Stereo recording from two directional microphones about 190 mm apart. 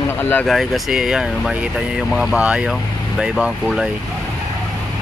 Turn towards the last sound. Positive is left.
turn(degrees=0)  # may be behind; listen again after turning